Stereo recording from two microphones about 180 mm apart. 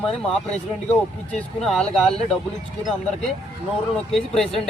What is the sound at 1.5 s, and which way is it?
Speech, centre (ahead or behind).